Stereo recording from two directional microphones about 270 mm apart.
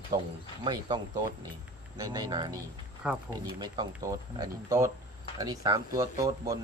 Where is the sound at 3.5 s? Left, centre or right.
Centre.